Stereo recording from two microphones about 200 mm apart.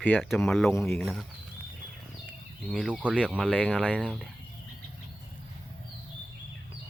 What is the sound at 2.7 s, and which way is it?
Speech, 5° right (ahead or behind).